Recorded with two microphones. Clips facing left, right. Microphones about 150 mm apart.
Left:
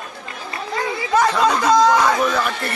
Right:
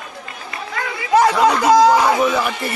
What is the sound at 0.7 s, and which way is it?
Chatter, 25° left (ahead or behind).